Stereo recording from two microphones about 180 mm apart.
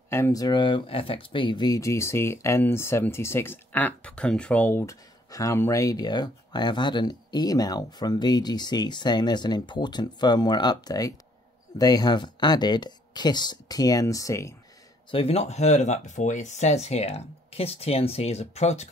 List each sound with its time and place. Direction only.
0.1 s speech: 15° left (ahead or behind)
15.0 s speech: 30° left (ahead or behind)